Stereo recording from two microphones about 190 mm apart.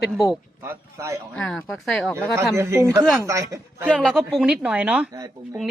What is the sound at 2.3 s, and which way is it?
A woman's voice, 15° right (ahead or behind).